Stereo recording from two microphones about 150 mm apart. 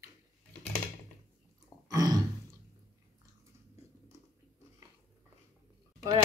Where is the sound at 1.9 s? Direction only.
25° right (ahead or behind).